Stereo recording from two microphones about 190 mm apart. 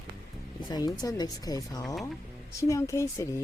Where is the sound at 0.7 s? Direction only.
20° left (ahead or behind).